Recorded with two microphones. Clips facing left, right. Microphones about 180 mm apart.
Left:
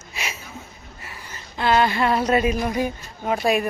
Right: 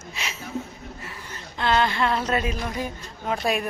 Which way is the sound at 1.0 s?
5° left (ahead or behind).